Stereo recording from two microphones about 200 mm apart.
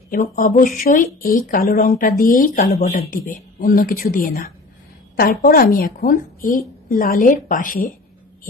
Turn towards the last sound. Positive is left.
turn(degrees=40)  # may be behind; listen again after turning